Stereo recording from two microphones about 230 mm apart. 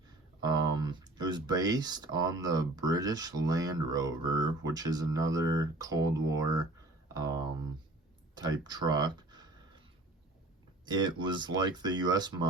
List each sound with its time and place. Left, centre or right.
0.4 s speech: centre
8.4 s a sound: centre
10.8 s speech: centre